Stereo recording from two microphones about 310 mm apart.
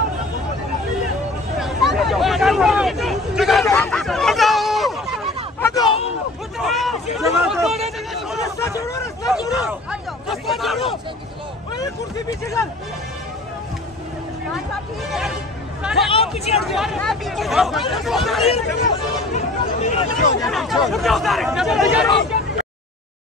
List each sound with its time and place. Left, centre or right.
1.6 s hubbub: centre
3.6 s a sound: centre
5.7 s a sound: centre
6.6 s hubbub: centre
7.2 s chatter: centre
8.6 s speech: centre
9.6 s speech: centre
15.8 s hubbub: centre
16.1 s speech: centre
16.5 s speech: centre
19.3 s speech: left
20.4 s speech: centre